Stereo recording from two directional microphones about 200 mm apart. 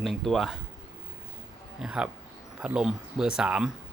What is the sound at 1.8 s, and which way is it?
Speech, 5° right (ahead or behind).